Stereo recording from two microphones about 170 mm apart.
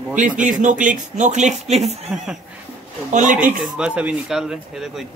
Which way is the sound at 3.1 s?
50° right (ahead or behind).